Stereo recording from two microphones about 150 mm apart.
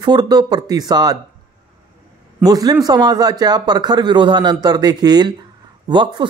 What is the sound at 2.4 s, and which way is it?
Speech, 25° right (ahead or behind).